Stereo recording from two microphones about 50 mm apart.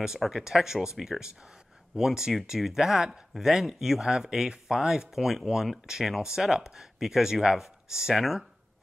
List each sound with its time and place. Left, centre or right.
0.2 s speech: centre